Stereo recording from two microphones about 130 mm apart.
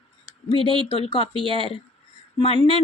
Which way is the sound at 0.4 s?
45° left (ahead or behind).